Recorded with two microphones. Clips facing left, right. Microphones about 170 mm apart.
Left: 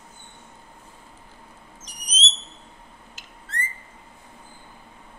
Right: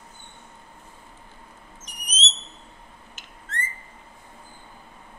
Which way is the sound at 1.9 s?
35° left (ahead or behind).